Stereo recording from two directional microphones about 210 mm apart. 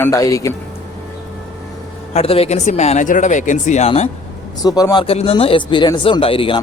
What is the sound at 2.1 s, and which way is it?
Speech, 30° left (ahead or behind).